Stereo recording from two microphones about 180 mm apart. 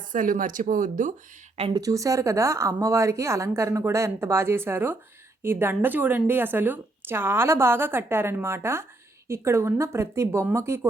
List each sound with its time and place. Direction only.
0.1 s speech: 45° right (ahead or behind)
1.7 s a woman's voice: 20° right (ahead or behind)